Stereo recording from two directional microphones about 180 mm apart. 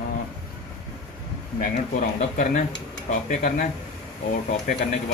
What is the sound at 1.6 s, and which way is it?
Speech, 45° left (ahead or behind).